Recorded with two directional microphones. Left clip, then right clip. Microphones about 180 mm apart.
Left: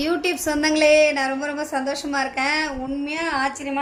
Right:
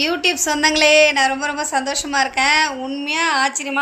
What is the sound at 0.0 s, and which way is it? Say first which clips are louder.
A woman's voice: right 4 dB; 10° left (ahead or behind).